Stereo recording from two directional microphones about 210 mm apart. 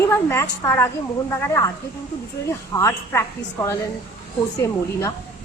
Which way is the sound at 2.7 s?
10° left (ahead or behind).